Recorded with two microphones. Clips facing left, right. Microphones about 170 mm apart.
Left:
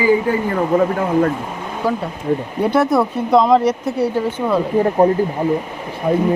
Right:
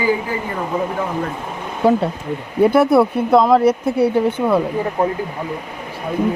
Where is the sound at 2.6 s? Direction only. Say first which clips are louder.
Right 4 dB; 5° right (ahead or behind).